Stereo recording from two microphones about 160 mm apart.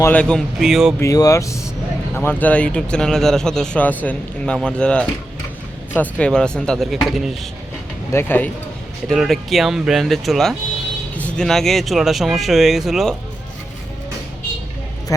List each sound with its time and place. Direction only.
0.0 s speech: 10° left (ahead or behind)
0.9 s speech: 20° left (ahead or behind); by 7.3 s centre (ahead or behind)
8.1 s speech: 15° left (ahead or behind)
9.0 s speech: centre (ahead or behind)